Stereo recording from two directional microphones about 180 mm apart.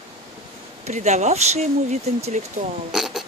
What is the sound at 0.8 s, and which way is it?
Speech, 40° right (ahead or behind).